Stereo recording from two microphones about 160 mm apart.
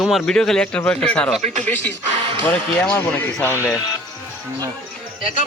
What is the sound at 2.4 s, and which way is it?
Speech, 10° left (ahead or behind).